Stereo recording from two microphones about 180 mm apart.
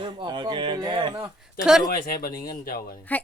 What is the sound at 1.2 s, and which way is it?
Speech, 5° right (ahead or behind).